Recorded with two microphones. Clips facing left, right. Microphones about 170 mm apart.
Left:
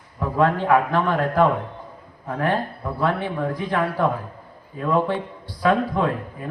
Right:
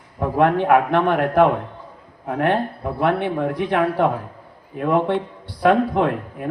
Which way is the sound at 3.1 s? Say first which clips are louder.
Right 6 dB; 65° right (ahead or behind).